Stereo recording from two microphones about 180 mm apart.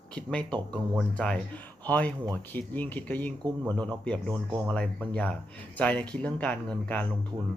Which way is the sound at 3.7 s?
25° right (ahead or behind).